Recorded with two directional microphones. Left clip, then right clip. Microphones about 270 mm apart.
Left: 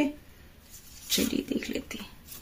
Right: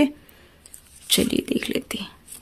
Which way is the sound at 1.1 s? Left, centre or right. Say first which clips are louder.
Right 7 dB; right.